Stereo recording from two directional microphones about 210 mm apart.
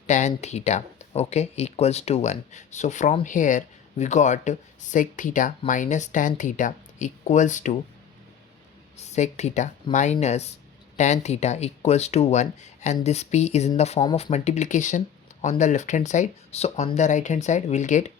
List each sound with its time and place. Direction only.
0.1 s speech: 35° left (ahead or behind)
9.0 s speech: 35° left (ahead or behind)